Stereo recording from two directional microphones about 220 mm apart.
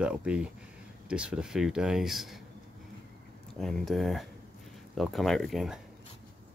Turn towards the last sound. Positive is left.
turn(degrees=0)  # may be behind; listen again after turning